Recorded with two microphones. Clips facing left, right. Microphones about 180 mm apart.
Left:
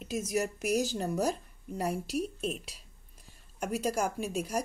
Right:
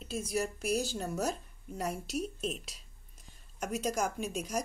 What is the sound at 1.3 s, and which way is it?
A woman's voice, 10° left (ahead or behind).